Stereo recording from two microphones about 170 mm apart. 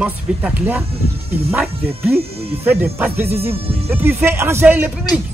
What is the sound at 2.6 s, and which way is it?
Speech, 10° right (ahead or behind).